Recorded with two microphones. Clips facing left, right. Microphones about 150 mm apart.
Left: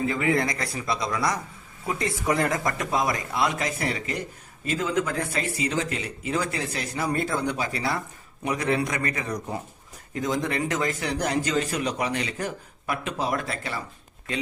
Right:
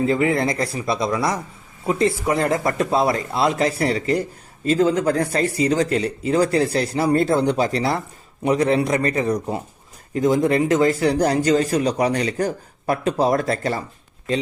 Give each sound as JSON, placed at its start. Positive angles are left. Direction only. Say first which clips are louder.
{"t": 0.1, "sound": "speech", "louder": "right 5 dB", "side_deg": -25}